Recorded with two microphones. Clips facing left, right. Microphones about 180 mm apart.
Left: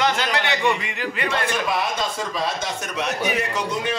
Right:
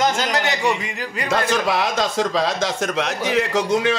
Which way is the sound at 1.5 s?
90° right.